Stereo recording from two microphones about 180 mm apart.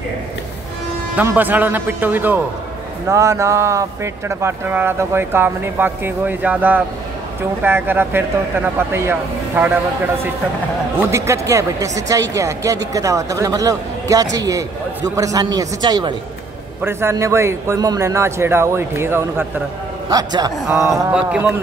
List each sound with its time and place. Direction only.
1.1 s speech: 10° right (ahead or behind)
11.0 s a man's voice: 15° right (ahead or behind)
16.8 s a man's voice: 15° right (ahead or behind)